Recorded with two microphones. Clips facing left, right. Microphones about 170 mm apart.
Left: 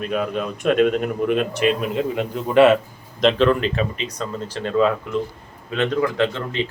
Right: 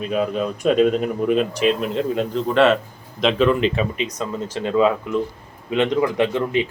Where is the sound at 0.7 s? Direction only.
Centre (ahead or behind).